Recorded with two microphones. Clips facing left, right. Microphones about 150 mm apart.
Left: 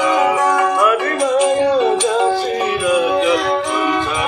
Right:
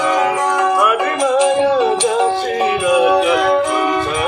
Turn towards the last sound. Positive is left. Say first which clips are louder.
# right 2 dB
turn(degrees=-10)  # may be behind; listen again after turning